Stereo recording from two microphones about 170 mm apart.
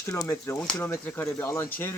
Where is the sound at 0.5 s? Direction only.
5° left (ahead or behind).